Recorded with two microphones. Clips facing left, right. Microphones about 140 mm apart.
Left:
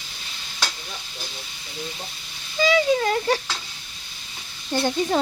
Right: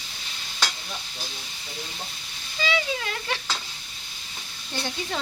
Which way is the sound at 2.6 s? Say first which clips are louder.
Left 9 dB; 40° left (ahead or behind).